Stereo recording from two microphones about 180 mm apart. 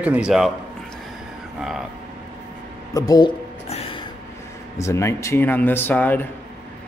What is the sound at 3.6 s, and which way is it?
Music, 35° left (ahead or behind).